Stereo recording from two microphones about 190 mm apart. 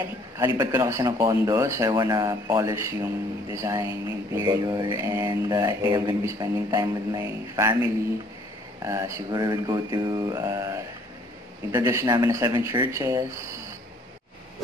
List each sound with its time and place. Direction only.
0.6 s mantra: 15° right (ahead or behind)